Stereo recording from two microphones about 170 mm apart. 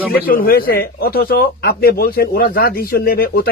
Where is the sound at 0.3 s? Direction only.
60° left (ahead or behind).